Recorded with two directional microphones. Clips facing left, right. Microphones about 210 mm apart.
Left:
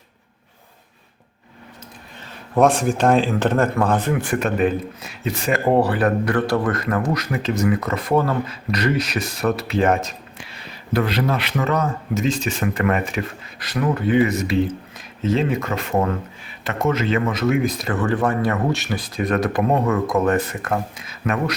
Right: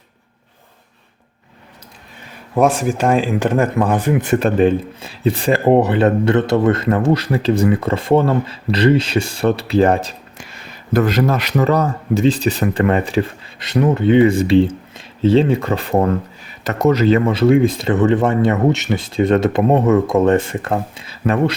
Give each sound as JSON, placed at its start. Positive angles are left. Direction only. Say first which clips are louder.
{"t": 2.6, "sound": "speech", "louder": "right 1 dB", "side_deg": -5}
{"t": 4.2, "sound": "speech", "louder": "right 6 dB", "side_deg": -25}
{"t": 10.4, "sound": "speech", "louder": "right 1 dB", "side_deg": -45}